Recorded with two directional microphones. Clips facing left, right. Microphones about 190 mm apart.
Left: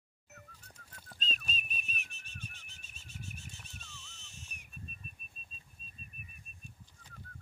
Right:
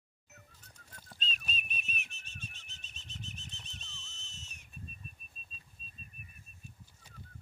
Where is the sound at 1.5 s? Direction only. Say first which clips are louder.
Right 1 dB; 40° left (ahead or behind).